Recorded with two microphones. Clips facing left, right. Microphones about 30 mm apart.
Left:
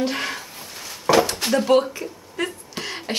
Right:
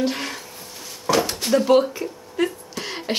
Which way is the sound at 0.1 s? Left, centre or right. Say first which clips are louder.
Left 2 dB; centre.